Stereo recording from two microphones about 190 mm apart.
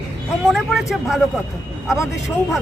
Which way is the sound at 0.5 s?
Centre (ahead or behind).